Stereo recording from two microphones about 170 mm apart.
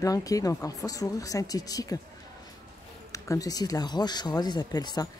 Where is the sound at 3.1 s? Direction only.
20° left (ahead or behind).